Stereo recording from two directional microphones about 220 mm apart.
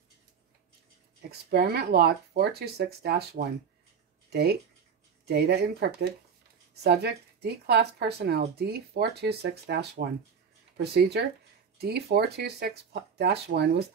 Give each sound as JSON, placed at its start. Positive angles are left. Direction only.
{"t": 1.5, "sound": "speech", "side_deg": -45}